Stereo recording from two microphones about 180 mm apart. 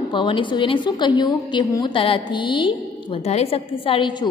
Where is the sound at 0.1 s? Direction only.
30° left (ahead or behind).